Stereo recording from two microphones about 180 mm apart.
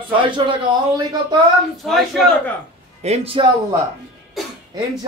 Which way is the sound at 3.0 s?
35° right (ahead or behind).